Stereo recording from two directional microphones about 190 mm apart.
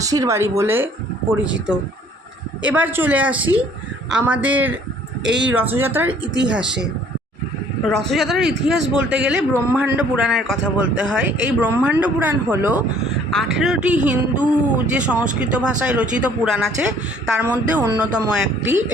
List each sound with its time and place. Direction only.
0.0 s a man's voice: 20° right (ahead or behind)
5.3 s speech: 70° right (ahead or behind)
5.5 s a man's voice: 10° right (ahead or behind)
8.0 s a man's voice: centre (ahead or behind)